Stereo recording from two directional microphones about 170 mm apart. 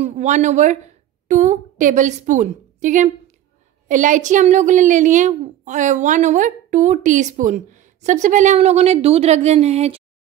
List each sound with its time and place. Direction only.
0.0 s a woman's voice: 45° right (ahead or behind)